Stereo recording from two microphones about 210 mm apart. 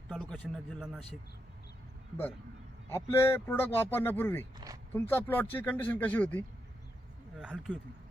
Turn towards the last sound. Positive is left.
turn(degrees=-5)  # may be behind; listen again after turning